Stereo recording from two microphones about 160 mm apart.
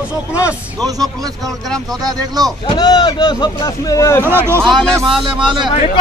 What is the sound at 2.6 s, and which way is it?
Speech, 25° left (ahead or behind).